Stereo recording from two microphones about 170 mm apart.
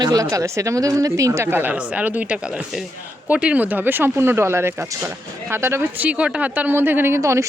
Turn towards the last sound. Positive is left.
turn(degrees=-15)  # may be behind; listen again after turning